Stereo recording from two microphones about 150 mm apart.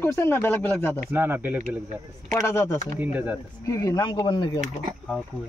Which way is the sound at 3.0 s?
10° right (ahead or behind).